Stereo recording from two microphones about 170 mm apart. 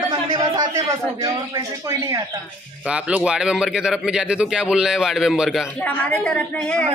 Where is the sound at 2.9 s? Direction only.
5° right (ahead or behind).